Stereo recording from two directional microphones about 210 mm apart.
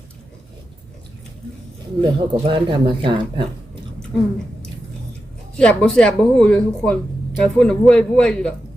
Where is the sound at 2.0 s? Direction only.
20° right (ahead or behind).